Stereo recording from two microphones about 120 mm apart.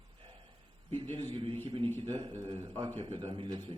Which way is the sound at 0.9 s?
45° right (ahead or behind).